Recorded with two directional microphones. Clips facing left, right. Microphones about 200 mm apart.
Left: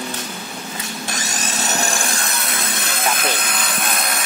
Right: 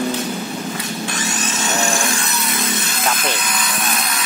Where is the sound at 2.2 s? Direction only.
55° left (ahead or behind).